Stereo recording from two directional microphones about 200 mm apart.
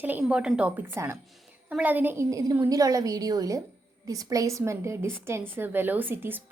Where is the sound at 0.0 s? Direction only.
10° right (ahead or behind).